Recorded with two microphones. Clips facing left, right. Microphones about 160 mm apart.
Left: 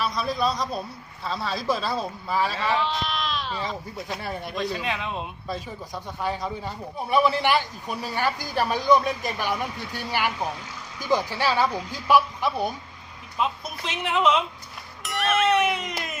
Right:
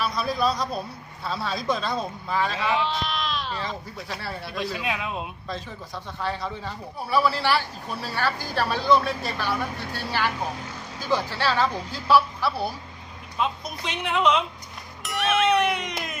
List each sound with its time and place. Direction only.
0.0 s a man's voice: centre (ahead or behind)
4.2 s speech: 15° left (ahead or behind)
4.7 s a man's voice: 5° right (ahead or behind)
6.2 s speech: 15° left (ahead or behind)
13.4 s a man's voice: centre (ahead or behind)